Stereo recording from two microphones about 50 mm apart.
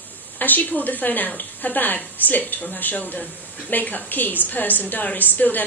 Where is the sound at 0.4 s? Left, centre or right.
Left.